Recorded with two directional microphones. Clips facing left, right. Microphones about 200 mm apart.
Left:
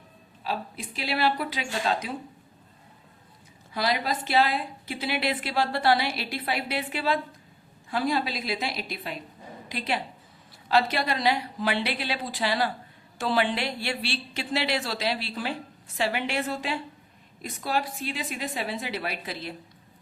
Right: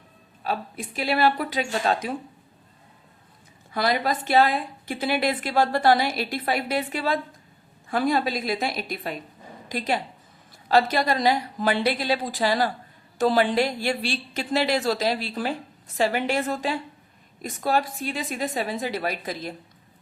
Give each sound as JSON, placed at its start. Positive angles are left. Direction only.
{"t": 0.4, "sound": "a woman's voice", "side_deg": -50}
{"t": 3.8, "sound": "a woman's voice", "side_deg": -50}